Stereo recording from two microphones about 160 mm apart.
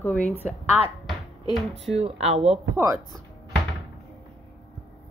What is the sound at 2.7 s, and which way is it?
Speech, 20° right (ahead or behind).